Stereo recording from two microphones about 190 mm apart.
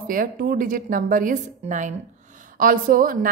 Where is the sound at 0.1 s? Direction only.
50° right (ahead or behind).